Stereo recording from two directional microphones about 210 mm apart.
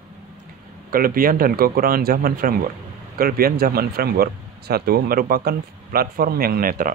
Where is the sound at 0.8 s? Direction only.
45° right (ahead or behind).